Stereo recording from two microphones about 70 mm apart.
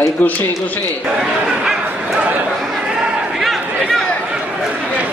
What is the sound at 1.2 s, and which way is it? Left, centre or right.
Speech, centre.